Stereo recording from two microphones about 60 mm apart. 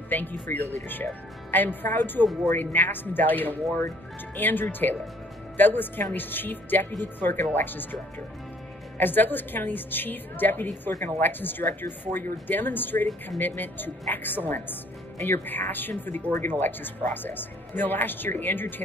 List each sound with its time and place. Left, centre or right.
0.1 s a woman's voice: left